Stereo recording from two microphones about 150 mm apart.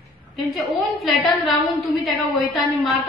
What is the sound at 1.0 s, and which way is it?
A woman's voice, centre (ahead or behind).